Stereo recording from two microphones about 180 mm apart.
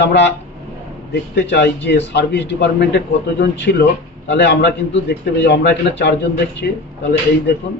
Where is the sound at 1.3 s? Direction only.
70° left (ahead or behind).